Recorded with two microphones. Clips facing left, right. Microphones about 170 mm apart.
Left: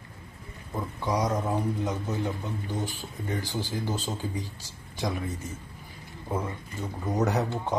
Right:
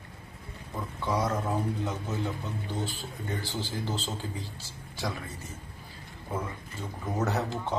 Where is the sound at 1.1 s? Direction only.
15° left (ahead or behind).